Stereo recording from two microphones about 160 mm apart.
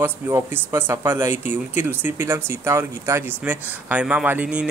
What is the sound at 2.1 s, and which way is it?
Speech, 15° right (ahead or behind).